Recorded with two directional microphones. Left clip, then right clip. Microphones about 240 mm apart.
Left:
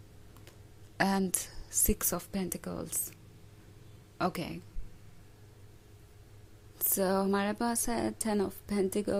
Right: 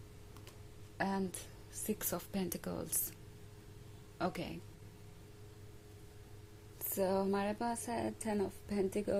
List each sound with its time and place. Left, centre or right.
0.9 s a woman's voice: left
4.2 s a woman's voice: centre
6.9 s a woman's voice: left